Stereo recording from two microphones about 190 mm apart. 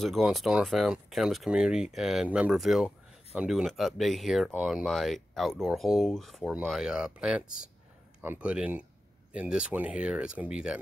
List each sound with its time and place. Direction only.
0.0 s speech: centre (ahead or behind)